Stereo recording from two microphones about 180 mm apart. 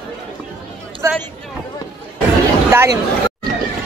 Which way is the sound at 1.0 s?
15° right (ahead or behind).